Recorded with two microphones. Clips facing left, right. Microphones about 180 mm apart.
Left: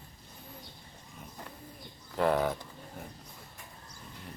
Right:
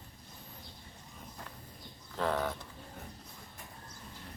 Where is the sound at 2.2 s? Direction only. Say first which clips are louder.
Left 5 dB; 10° left (ahead or behind).